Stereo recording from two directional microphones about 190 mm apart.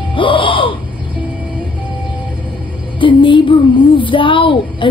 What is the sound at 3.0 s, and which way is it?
Speech, 25° left (ahead or behind).